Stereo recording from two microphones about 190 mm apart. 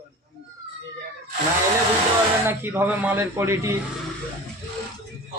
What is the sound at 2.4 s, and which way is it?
Speech, 10° right (ahead or behind).